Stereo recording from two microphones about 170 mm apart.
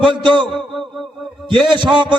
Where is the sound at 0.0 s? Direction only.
30° right (ahead or behind).